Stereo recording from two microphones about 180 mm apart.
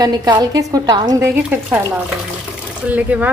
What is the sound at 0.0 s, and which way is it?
A woman's voice, 20° right (ahead or behind).